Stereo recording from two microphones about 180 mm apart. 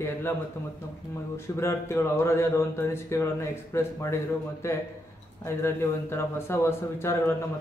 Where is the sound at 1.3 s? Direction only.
15° left (ahead or behind).